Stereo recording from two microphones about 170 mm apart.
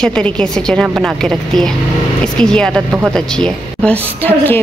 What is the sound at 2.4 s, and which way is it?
A woman's voice, 5° left (ahead or behind).